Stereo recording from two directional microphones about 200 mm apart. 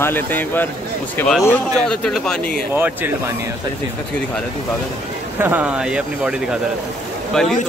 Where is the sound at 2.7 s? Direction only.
10° right (ahead or behind).